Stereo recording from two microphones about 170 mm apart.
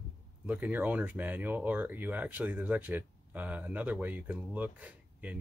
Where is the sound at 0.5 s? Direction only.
10° right (ahead or behind).